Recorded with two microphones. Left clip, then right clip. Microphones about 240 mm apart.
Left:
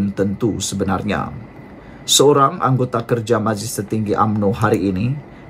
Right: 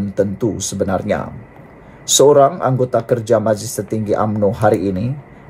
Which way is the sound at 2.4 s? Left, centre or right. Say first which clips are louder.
Right 3 dB; centre.